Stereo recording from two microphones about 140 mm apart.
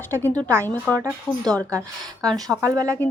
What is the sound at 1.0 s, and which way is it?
Speech, 25° right (ahead or behind).